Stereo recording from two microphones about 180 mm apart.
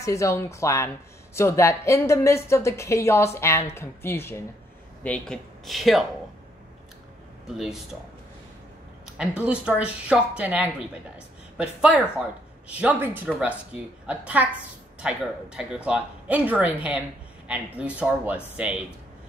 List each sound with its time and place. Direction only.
0.0 s a woman's voice: 15° left (ahead or behind); by 6.0 s centre (ahead or behind)
7.4 s speech: centre (ahead or behind)
9.0 s speech: 5° right (ahead or behind)